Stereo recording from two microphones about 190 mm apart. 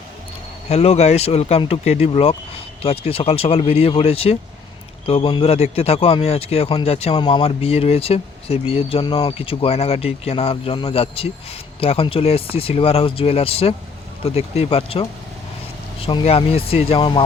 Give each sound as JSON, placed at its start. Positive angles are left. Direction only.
{"t": 0.7, "sound": "a man's voice", "side_deg": 35}